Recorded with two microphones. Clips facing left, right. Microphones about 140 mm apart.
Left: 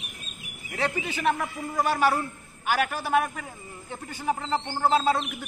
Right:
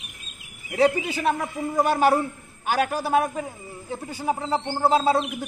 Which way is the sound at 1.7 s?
20° right (ahead or behind).